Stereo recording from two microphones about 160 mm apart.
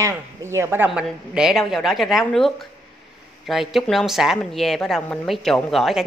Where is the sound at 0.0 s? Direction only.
15° right (ahead or behind).